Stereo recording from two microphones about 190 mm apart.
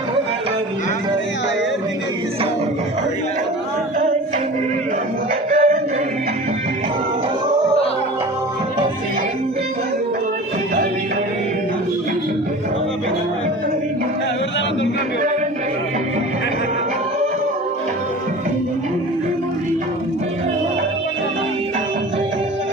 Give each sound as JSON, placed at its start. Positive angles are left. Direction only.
{"t": 5.5, "sound": "music", "side_deg": -45}